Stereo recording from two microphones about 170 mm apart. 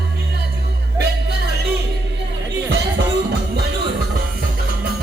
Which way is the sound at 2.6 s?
90° right.